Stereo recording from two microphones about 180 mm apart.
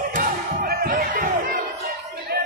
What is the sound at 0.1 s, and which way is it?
Music, 55° right (ahead or behind).